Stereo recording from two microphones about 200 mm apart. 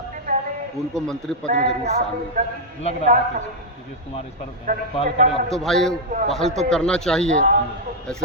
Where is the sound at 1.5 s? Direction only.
40° right (ahead or behind).